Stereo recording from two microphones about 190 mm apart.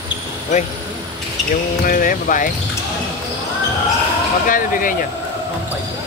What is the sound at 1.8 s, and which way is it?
Speech, 45° left (ahead or behind).